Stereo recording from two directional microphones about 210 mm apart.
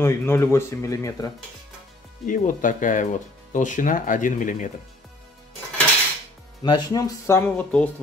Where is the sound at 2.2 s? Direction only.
40° left (ahead or behind).